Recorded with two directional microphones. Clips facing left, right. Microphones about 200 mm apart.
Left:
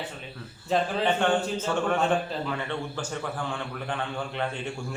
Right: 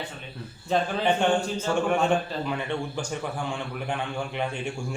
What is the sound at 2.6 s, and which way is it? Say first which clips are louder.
A man's voice: right 2 dB; 15° right (ahead or behind).